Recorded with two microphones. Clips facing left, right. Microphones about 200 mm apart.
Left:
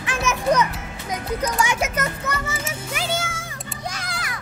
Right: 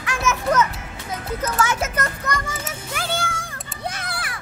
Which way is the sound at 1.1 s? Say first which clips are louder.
Left 2 dB; 15° left (ahead or behind).